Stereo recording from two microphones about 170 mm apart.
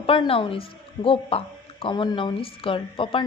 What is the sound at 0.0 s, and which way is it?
A woman's voice, 35° left (ahead or behind).